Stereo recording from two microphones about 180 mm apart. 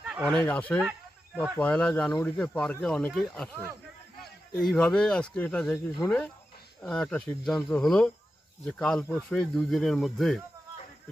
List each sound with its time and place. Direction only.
0.2 s speech: 5° left (ahead or behind)
0.8 s a sound: 10° right (ahead or behind)
1.6 s speech: 5° left (ahead or behind)